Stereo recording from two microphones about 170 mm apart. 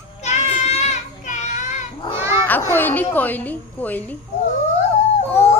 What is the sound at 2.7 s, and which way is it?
A child's voice, 10° left (ahead or behind).